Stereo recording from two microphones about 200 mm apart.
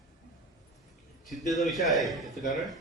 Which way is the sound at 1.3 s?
Centre (ahead or behind).